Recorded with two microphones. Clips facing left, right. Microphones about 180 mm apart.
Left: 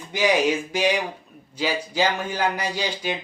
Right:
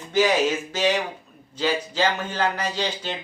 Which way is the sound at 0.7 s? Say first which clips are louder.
Even; 10° left (ahead or behind).